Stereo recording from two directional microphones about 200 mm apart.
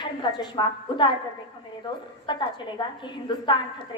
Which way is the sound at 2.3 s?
25° left (ahead or behind).